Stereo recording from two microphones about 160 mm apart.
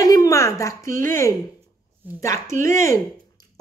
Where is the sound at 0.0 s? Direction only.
20° left (ahead or behind).